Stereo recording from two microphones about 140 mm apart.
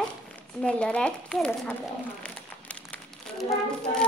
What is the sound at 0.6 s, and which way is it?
A woman's voice, 5° left (ahead or behind).